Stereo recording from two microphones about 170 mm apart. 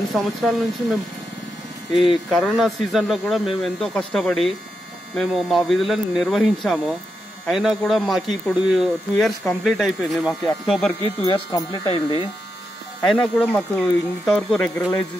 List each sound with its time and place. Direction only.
0.1 s speech: centre (ahead or behind)
2.0 s speech: centre (ahead or behind)
11.2 s speech: 25° left (ahead or behind)
13.0 s speech: 5° left (ahead or behind)